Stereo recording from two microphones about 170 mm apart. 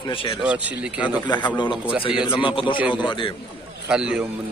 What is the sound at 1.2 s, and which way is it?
Speech, 25° left (ahead or behind).